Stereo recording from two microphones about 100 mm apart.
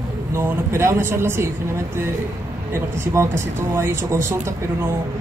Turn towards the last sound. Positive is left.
turn(degrees=-25)  # may be behind; listen again after turning